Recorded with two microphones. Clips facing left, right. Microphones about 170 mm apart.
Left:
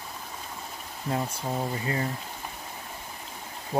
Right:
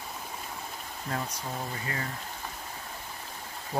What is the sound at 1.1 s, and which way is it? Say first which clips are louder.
Speech: left 5 dB; 30° left (ahead or behind).